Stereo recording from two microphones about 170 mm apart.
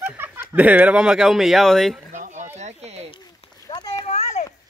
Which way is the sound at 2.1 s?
45° right (ahead or behind).